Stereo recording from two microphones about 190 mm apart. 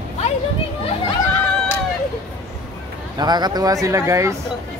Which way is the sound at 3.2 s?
20° right (ahead or behind).